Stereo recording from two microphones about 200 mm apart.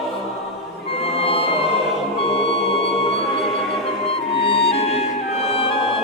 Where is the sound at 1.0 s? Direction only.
30° left (ahead or behind).